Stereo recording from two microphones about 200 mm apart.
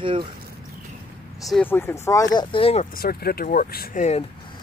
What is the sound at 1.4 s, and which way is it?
Speech, 5° left (ahead or behind).